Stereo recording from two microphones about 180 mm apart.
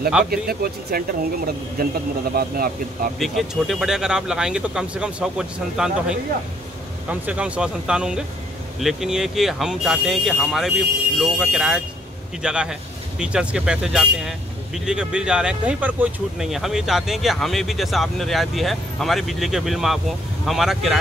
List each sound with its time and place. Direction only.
0.3 s speech: 55° right (ahead or behind)
3.2 s speech: centre (ahead or behind)